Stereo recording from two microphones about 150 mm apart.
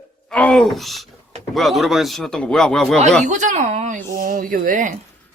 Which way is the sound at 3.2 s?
55° right (ahead or behind).